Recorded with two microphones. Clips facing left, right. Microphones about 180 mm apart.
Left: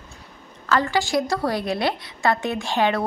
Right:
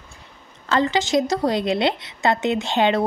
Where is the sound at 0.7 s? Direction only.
20° right (ahead or behind).